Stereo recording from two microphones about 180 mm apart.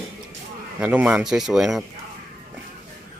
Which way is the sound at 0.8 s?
10° right (ahead or behind).